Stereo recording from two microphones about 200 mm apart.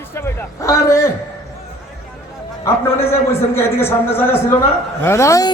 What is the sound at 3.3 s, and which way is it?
A man's voice, 10° left (ahead or behind).